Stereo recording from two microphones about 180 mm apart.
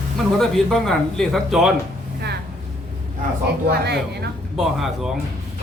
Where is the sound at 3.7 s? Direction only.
65° right (ahead or behind).